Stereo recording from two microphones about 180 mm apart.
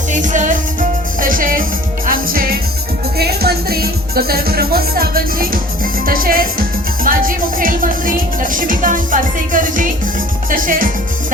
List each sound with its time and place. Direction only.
0.1 s music: 45° right (ahead or behind)